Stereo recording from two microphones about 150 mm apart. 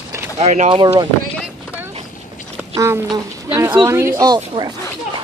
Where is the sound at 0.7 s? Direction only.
35° right (ahead or behind).